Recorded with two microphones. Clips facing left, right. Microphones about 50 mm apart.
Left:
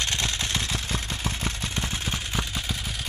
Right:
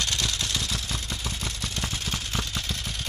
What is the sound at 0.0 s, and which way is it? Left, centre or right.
Vehicle, left.